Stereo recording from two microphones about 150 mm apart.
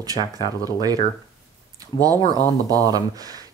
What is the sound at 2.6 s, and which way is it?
Speech, 25° right (ahead or behind).